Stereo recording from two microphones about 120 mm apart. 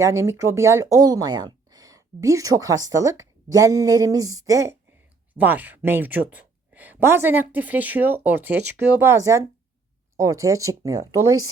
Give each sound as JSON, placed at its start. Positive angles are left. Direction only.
{"t": 0.0, "sound": "speech", "side_deg": -25}
{"t": 5.4, "sound": "speech", "side_deg": -15}